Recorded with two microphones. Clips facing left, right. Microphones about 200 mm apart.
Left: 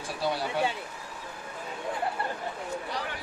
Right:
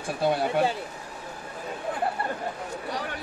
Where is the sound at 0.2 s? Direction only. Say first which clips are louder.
Right 5 dB; 50° right (ahead or behind).